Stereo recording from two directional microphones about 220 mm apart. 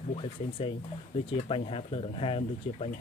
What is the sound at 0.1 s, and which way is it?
Speech, 25° left (ahead or behind).